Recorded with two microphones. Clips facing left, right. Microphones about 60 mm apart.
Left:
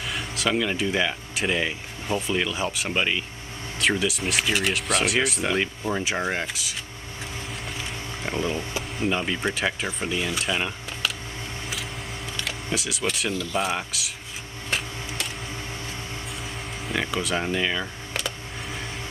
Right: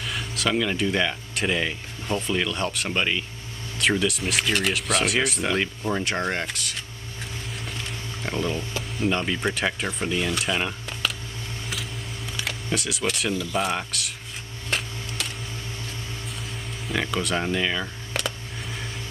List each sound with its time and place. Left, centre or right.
0.0 s speech: centre
7.7 s a sound: centre
9.1 s speech: centre
12.7 s speech: centre
16.8 s speech: centre